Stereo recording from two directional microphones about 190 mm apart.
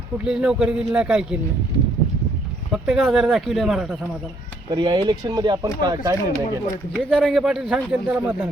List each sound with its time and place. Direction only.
0.3 s a man's voice: 5° right (ahead or behind)
2.7 s a man's voice: 5° right (ahead or behind)
4.7 s speech: 25° right (ahead or behind)
6.9 s a man's voice: centre (ahead or behind)